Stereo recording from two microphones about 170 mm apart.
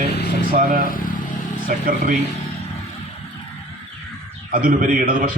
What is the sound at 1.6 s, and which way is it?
Speech, 55° right (ahead or behind).